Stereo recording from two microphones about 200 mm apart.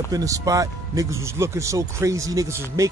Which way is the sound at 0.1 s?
15° right (ahead or behind).